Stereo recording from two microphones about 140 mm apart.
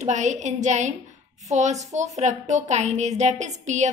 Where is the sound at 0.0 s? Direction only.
60° right (ahead or behind).